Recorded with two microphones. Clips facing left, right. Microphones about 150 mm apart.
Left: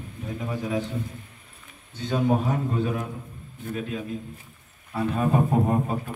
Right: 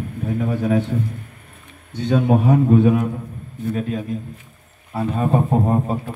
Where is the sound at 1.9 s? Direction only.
65° right (ahead or behind).